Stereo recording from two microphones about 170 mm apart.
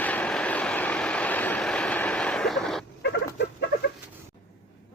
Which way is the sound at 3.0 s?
90° left.